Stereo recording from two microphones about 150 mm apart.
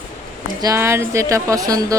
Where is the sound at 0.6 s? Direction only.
20° right (ahead or behind).